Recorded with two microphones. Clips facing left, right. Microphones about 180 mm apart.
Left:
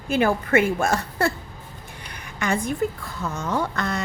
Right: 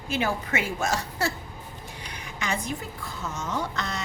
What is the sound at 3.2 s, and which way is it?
Speech, 60° left (ahead or behind).